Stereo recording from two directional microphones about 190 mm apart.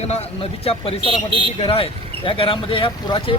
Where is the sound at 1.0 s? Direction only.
30° right (ahead or behind).